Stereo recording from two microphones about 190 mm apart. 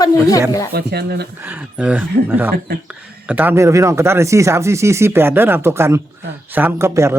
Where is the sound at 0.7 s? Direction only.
60° right (ahead or behind).